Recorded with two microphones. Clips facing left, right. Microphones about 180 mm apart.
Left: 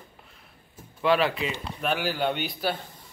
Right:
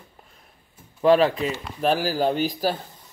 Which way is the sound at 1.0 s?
40° right (ahead or behind).